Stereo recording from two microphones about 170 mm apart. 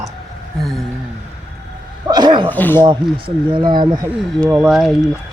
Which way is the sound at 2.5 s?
10° left (ahead or behind).